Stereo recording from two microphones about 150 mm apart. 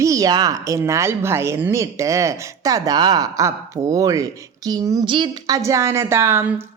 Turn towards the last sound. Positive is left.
turn(degrees=-15)  # may be behind; listen again after turning